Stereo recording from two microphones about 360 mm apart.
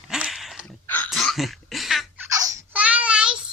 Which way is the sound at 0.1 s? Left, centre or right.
Centre.